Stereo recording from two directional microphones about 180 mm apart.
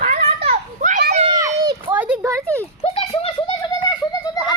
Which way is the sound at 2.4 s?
10° left (ahead or behind).